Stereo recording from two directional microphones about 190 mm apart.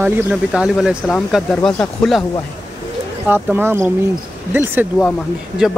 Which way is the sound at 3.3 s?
10° right (ahead or behind).